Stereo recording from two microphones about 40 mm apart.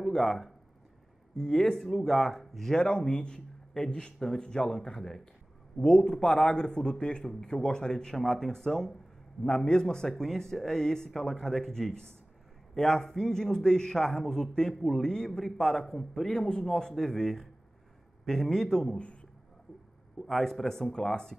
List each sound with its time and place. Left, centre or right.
0.0 s a sound: centre
1.3 s a man's voice: centre
1.8 s a man's voice: centre
2.8 s a man's voice: left
10.0 s a man's voice: centre
16.3 s a man's voice: left
20.2 s a man's voice: centre
20.9 s a man's voice: centre